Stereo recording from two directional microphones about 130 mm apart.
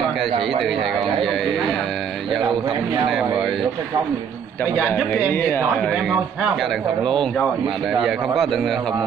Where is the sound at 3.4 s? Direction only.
Centre (ahead or behind).